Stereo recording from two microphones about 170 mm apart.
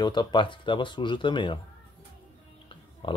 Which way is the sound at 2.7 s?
30° left (ahead or behind).